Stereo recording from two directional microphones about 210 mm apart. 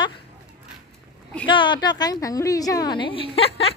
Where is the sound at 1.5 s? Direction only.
20° left (ahead or behind).